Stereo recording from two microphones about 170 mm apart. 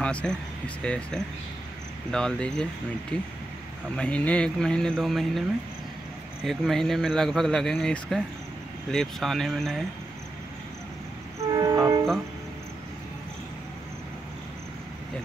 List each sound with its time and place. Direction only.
0.0 s speech: 5° left (ahead or behind)
6.4 s speech: centre (ahead or behind)
11.5 s train: 15° right (ahead or behind)